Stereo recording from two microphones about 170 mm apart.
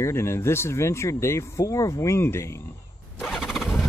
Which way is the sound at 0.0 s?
15° left (ahead or behind).